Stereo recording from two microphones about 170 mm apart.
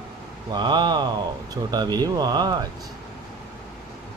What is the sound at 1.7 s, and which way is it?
Speech, 25° right (ahead or behind).